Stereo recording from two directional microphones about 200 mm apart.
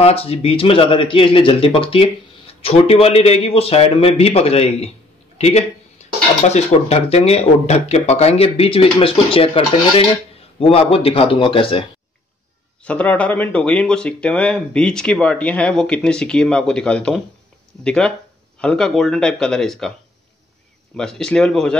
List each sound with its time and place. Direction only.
0.0 s speech: 30° left (ahead or behind)
10.6 s speech: 30° left (ahead or behind)
12.8 s speech: 5° left (ahead or behind)
20.9 s speech: 5° left (ahead or behind)